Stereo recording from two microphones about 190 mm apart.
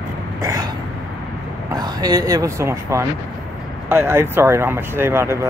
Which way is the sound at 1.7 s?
20° right (ahead or behind).